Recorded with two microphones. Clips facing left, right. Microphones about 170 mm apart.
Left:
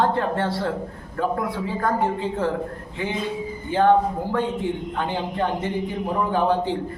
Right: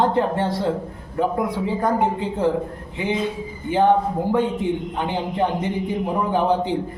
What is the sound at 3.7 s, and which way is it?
A man's voice, 15° right (ahead or behind).